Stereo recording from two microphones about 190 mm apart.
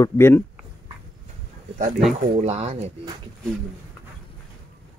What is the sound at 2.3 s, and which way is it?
Speech, 35° right (ahead or behind).